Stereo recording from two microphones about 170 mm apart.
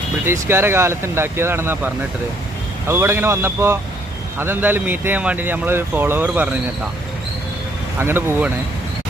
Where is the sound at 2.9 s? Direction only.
15° right (ahead or behind).